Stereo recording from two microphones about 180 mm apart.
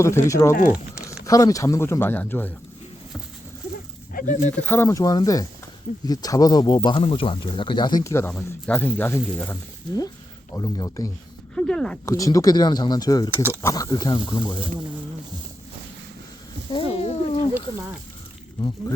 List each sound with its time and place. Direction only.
0.0 s speech: 15° left (ahead or behind)
4.1 s speech: 45° left (ahead or behind)
4.5 s speech: 10° left (ahead or behind)
11.5 s speech: 5° left (ahead or behind)
12.0 s speech: 20° left (ahead or behind)
16.7 s speech: 35° left (ahead or behind)